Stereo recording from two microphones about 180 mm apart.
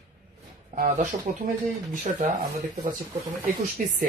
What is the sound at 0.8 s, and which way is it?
Speech, 50° right (ahead or behind).